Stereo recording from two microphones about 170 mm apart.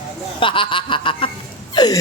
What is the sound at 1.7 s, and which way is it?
Hiccup, 25° left (ahead or behind).